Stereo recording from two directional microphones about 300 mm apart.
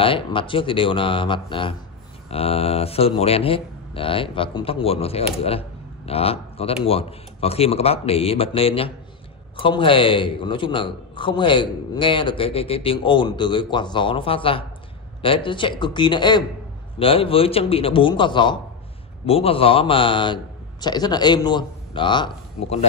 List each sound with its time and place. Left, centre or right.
0.0 s a man's voice: centre